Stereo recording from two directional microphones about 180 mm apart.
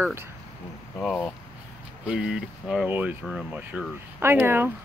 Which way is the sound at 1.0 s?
5° left (ahead or behind).